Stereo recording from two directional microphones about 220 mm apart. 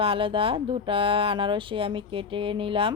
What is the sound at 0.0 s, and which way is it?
Speech, 25° right (ahead or behind).